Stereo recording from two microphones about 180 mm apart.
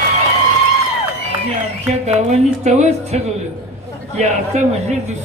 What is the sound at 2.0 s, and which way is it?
A man's voice, 35° right (ahead or behind).